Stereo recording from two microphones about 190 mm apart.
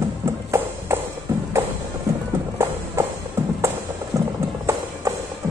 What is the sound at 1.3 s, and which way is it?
Music, 15° right (ahead or behind).